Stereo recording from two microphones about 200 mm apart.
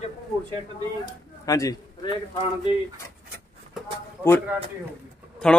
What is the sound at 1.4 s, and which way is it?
Speech, 15° left (ahead or behind).